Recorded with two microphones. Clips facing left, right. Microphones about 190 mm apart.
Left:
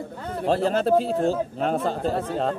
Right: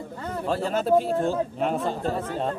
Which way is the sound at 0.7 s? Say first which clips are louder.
Right 1 dB; 35° left (ahead or behind).